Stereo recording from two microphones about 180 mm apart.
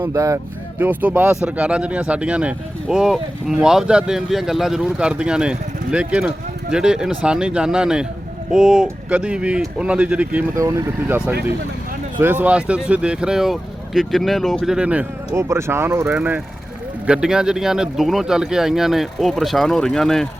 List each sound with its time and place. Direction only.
0.0 s speech: 20° right (ahead or behind); by 20.2 s centre (ahead or behind)